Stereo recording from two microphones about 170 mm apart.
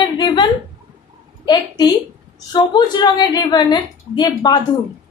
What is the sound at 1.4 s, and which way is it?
A woman's voice, 25° left (ahead or behind).